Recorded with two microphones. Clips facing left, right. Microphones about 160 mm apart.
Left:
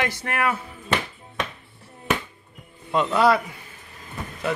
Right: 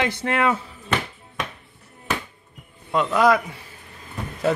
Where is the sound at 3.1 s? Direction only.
10° right (ahead or behind).